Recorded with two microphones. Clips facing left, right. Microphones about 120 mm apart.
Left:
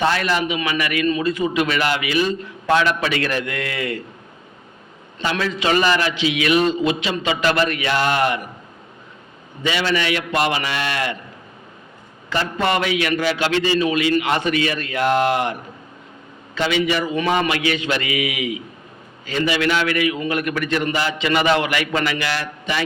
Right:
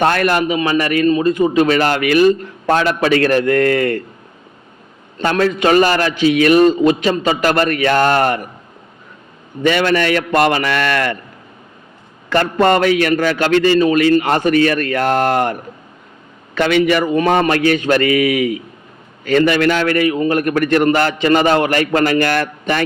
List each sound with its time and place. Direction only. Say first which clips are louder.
0.0 s a man's voice: right 5 dB; 55° right (ahead or behind)
5.2 s a man's voice: right 7 dB; 50° right (ahead or behind)
9.6 s a man's voice: right 6 dB; 50° right (ahead or behind)
12.3 s a man's voice: right 7 dB; 50° right (ahead or behind)
16.6 s a man's voice: right 6 dB; 55° right (ahead or behind)